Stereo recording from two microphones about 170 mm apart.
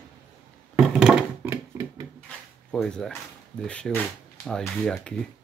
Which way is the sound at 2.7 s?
5° left (ahead or behind).